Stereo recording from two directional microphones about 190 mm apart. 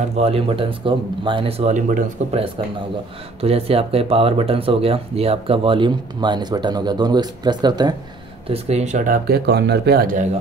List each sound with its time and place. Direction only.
0.0 s speech: 35° right (ahead or behind)
8.5 s speech: 35° right (ahead or behind)